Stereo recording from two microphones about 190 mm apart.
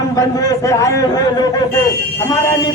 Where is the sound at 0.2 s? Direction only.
20° left (ahead or behind).